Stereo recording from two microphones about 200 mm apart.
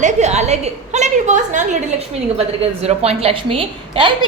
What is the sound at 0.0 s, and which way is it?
A woman's voice, 35° right (ahead or behind).